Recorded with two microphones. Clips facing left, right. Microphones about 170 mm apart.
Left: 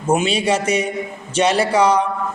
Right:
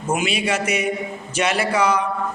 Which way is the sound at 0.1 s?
30° left (ahead or behind).